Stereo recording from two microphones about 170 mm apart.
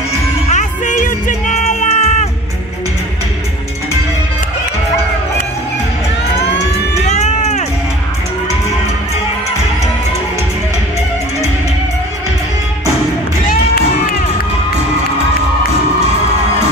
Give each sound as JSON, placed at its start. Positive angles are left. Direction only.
{"t": 0.5, "sound": "music", "side_deg": 45}
{"t": 7.1, "sound": "music", "side_deg": 45}